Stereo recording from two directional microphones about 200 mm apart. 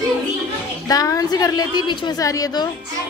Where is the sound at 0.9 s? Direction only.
15° left (ahead or behind).